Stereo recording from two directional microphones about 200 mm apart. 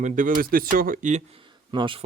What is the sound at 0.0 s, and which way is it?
Speech, 40° right (ahead or behind).